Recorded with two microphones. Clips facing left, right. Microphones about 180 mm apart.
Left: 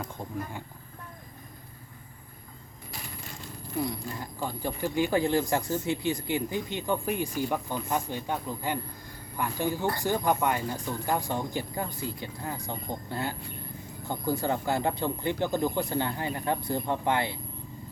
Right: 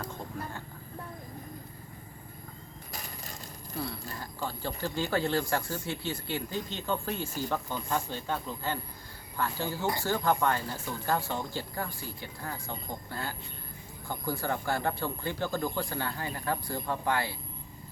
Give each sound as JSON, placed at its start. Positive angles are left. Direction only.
{"t": 2.9, "sound": "coin", "side_deg": -40}
{"t": 3.8, "sound": "speech", "side_deg": 15}